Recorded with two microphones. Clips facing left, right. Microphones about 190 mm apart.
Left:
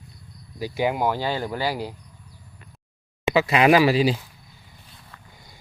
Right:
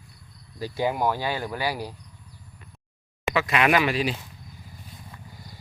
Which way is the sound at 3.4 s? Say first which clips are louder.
Left 5 dB; 30° left (ahead or behind).